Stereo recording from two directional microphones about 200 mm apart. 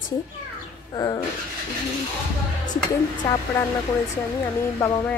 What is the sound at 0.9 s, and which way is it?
Speech, 20° left (ahead or behind).